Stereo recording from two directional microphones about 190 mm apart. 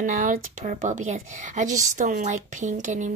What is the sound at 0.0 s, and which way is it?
Speech, 45° right (ahead or behind).